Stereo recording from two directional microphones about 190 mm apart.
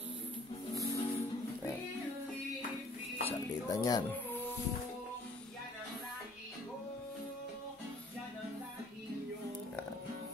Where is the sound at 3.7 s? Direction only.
20° left (ahead or behind).